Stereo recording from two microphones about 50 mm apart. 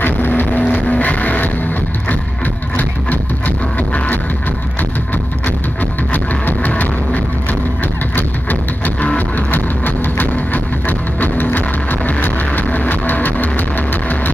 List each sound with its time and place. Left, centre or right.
0.0 s vehicle: left
0.5 s music: left
2.8 s music: left
5.8 s music: left
12.5 s vehicle: left